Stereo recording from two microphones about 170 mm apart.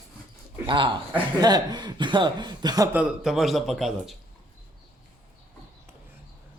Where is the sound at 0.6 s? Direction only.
30° right (ahead or behind).